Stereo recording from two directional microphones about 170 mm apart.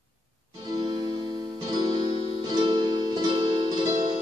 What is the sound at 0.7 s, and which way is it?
Music, 25° right (ahead or behind).